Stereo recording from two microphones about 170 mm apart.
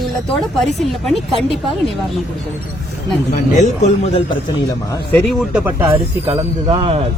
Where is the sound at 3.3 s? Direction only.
45° left (ahead or behind).